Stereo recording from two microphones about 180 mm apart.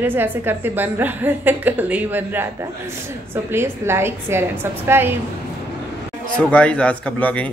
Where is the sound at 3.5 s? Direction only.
15° right (ahead or behind).